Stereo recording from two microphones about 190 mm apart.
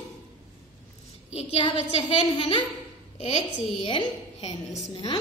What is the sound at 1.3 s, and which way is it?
A woman's voice, 35° left (ahead or behind).